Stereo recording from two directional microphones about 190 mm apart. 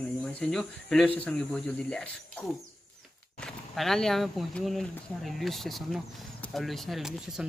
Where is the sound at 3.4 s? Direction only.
Centre (ahead or behind).